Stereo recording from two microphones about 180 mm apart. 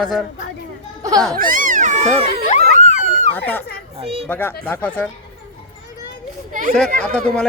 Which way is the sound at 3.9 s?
30° right (ahead or behind).